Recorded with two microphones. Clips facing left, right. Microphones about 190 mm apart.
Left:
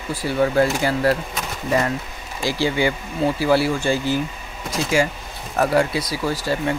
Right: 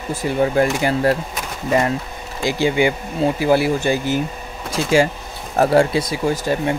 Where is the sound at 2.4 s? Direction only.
20° right (ahead or behind).